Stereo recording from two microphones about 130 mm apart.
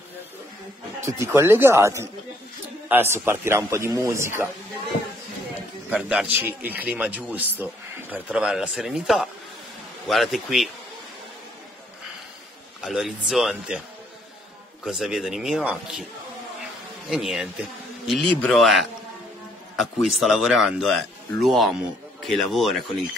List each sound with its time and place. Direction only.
1.0 s speech: 20° right (ahead or behind)
5.9 s a man's voice: 10° right (ahead or behind)
12.8 s speech: centre (ahead or behind)
14.9 s speech: 5° right (ahead or behind)
17.1 s a man's voice: 5° right (ahead or behind)